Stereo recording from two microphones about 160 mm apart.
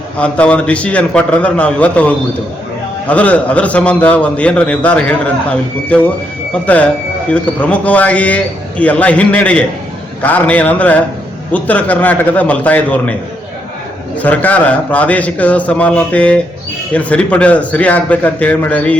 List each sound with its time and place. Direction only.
0.2 s a man's voice: 10° left (ahead or behind)
14.2 s a man's voice: 10° left (ahead or behind)